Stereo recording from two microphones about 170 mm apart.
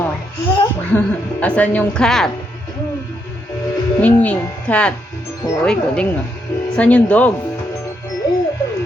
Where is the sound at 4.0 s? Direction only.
10° left (ahead or behind).